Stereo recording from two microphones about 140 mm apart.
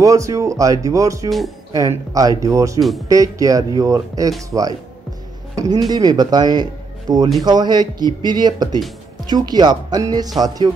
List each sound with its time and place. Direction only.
0.0 s speech: 25° right (ahead or behind)
5.9 s speech: 30° right (ahead or behind)